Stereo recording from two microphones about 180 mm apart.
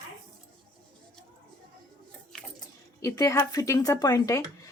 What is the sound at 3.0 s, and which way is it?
Speech, 20° left (ahead or behind).